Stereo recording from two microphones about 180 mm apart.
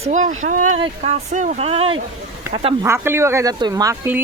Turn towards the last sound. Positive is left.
turn(degrees=-15)  # may be behind; listen again after turning